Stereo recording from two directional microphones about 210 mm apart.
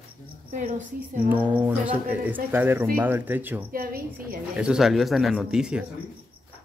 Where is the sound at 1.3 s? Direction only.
5° right (ahead or behind).